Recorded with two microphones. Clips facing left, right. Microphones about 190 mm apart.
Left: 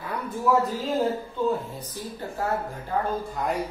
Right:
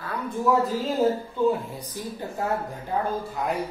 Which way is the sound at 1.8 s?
15° right (ahead or behind).